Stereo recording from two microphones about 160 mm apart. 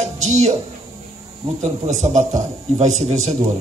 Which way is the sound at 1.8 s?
45° right (ahead or behind).